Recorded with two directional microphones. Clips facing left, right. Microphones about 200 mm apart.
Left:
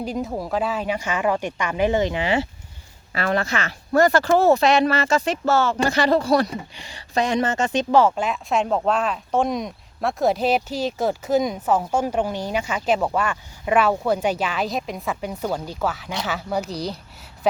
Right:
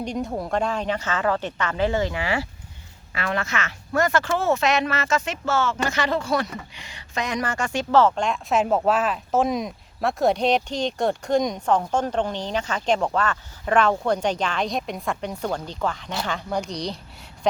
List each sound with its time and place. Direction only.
0.0 s a woman's voice: 5° left (ahead or behind); by 2.5 s 20° left (ahead or behind)
3.2 s speech: 35° left (ahead or behind); by 17.6 s 5° left (ahead or behind)